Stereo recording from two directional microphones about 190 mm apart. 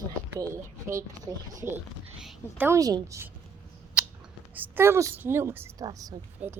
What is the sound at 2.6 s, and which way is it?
Speech, 15° right (ahead or behind).